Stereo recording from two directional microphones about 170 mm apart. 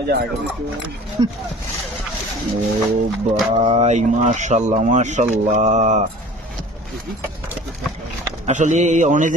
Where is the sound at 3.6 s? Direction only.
35° right (ahead or behind).